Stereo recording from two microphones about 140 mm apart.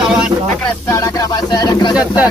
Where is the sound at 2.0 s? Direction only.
10° right (ahead or behind).